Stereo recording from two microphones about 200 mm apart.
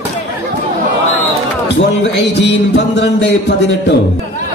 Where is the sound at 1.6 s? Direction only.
60° left (ahead or behind).